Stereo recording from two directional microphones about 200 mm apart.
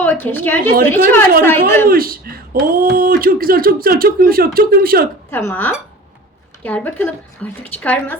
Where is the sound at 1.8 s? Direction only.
45° right (ahead or behind).